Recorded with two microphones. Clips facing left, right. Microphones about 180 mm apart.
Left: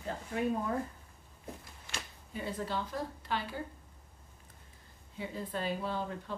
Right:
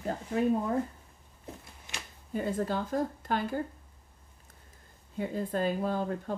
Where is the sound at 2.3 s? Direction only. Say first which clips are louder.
Right 6 dB; 45° right (ahead or behind).